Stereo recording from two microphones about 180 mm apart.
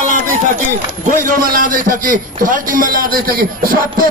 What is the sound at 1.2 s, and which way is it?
A man's voice, 50° right (ahead or behind).